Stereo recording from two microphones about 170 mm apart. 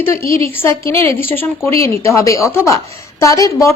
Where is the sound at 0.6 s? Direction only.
15° left (ahead or behind).